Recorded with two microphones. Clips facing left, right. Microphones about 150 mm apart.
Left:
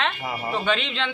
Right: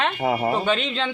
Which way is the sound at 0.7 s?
40° right (ahead or behind).